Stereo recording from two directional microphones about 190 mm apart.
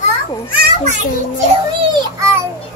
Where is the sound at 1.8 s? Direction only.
25° right (ahead or behind).